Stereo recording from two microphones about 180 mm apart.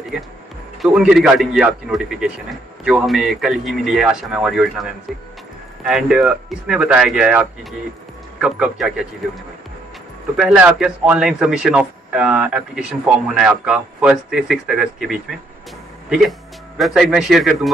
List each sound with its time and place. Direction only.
0.8 s a man's voice: 5° right (ahead or behind)
5.9 s a man's voice: centre (ahead or behind)
10.3 s a man's voice: 5° right (ahead or behind)